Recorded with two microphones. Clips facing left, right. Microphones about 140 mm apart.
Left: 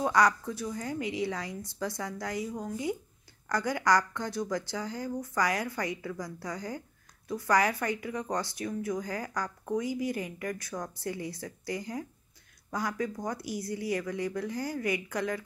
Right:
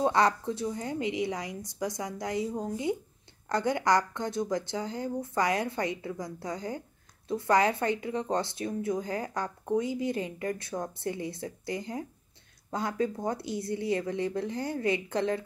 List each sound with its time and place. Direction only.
0.0 s speech: 25° right (ahead or behind)